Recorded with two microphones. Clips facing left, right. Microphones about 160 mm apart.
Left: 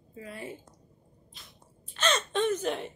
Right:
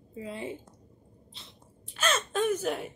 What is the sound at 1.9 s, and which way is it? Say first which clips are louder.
Speech: left 1 dB; 5° right (ahead or behind).